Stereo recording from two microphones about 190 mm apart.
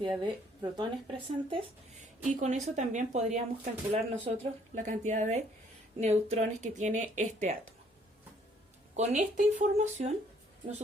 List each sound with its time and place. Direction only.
0.0 s speech: 20° right (ahead or behind)
9.0 s speech: 35° right (ahead or behind)